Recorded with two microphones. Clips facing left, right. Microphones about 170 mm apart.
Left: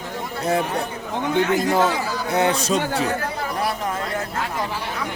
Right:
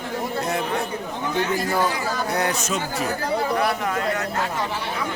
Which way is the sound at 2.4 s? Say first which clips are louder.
Left 4 dB; 30° left (ahead or behind).